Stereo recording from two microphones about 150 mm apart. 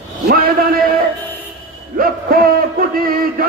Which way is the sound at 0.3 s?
85° right.